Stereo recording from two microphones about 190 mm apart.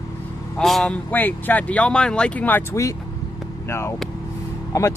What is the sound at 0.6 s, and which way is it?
Speech, centre (ahead or behind).